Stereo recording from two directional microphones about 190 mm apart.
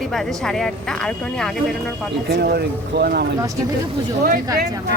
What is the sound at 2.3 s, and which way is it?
Speech, 60° right (ahead or behind).